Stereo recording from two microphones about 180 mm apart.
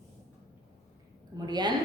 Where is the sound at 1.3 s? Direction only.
25° right (ahead or behind).